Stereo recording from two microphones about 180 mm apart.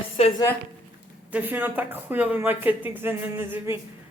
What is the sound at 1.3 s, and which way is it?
A man's voice, 10° right (ahead or behind).